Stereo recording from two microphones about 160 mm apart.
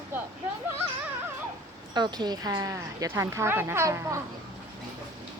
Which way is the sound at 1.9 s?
25° right (ahead or behind).